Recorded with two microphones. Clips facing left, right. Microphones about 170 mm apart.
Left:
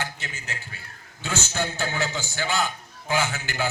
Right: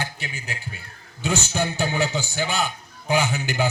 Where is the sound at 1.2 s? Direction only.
15° right (ahead or behind).